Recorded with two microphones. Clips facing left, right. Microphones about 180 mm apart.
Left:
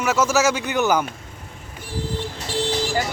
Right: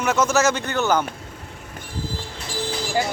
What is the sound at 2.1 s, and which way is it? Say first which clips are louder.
Vehicle: left 4 dB; 70° left (ahead or behind).